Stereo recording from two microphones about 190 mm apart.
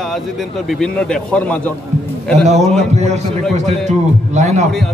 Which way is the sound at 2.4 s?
35° right (ahead or behind).